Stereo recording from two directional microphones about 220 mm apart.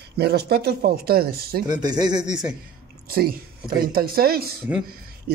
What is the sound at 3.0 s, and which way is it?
Speech, 45° right (ahead or behind).